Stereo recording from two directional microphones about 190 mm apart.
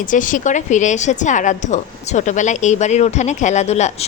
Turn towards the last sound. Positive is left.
turn(degrees=35)  # may be behind; listen again after turning